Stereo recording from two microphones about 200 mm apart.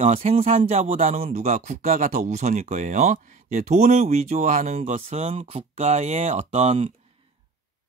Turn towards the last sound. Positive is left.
turn(degrees=-35)  # may be behind; listen again after turning